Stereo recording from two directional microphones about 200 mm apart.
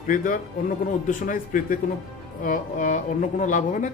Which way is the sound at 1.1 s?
40° left (ahead or behind).